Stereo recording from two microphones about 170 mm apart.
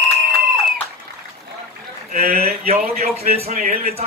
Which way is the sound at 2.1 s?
60° right (ahead or behind).